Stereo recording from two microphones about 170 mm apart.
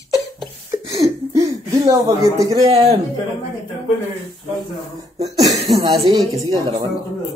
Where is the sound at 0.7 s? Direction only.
20° right (ahead or behind).